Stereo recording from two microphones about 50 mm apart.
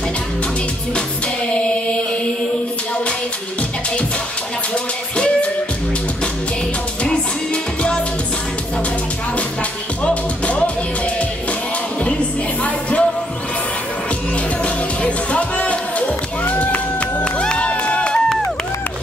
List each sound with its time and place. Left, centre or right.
1.5 s music: left
5.1 s music: left
10.0 s music: left
12.0 s music: left
14.6 s music: left
17.2 s music: centre